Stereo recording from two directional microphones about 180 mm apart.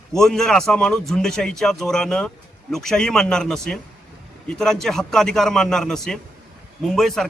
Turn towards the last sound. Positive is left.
turn(degrees=0)  # may be behind; listen again after turning